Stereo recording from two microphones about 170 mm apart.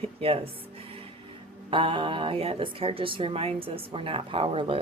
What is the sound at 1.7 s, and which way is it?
A woman's voice, 30° right (ahead or behind).